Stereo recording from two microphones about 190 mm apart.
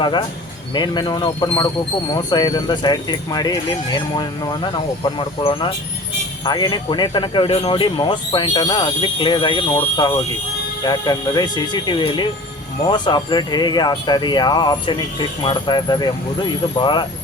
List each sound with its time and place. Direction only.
0.0 s speech: 25° left (ahead or behind)